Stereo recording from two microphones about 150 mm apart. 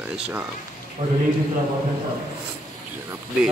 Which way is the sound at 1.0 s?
30° right (ahead or behind).